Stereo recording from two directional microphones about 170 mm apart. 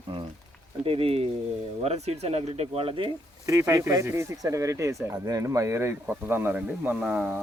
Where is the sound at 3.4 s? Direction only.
15° right (ahead or behind).